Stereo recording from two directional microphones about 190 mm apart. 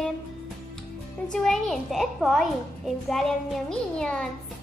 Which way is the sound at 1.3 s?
Centre (ahead or behind).